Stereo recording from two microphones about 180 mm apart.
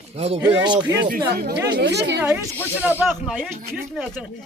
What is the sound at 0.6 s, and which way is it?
Speech, 25° right (ahead or behind).